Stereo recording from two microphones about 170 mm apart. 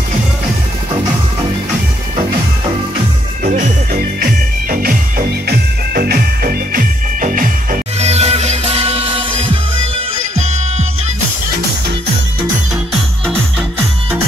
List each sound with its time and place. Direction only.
3.5 s music: 55° right (ahead or behind)
8.0 s music: 40° right (ahead or behind)